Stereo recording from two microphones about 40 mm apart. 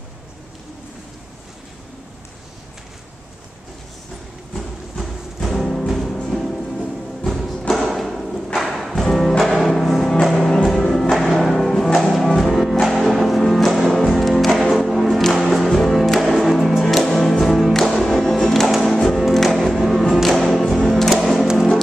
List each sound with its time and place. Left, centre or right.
4.6 s music: centre
17.7 s music: centre
18.7 s music: centre